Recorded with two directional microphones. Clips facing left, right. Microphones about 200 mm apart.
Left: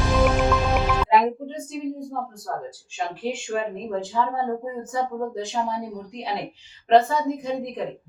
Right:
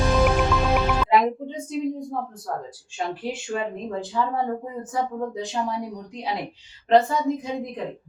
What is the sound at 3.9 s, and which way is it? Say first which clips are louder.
Speech: left 1 dB; centre (ahead or behind).